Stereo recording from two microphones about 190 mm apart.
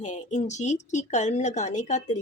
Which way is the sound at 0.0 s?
40° left (ahead or behind).